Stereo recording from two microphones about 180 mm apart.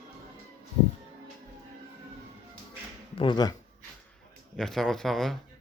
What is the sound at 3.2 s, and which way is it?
Speech, 25° left (ahead or behind).